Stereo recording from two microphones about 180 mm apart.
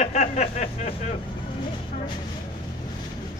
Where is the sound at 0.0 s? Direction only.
40° left (ahead or behind).